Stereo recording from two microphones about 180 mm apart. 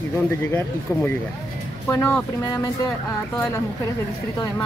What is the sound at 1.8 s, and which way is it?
Speech, 15° left (ahead or behind).